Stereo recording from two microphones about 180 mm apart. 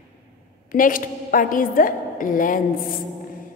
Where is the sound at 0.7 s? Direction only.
50° left (ahead or behind).